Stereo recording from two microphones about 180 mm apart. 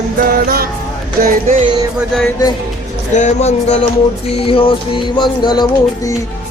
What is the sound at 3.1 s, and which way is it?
Speech, 40° left (ahead or behind).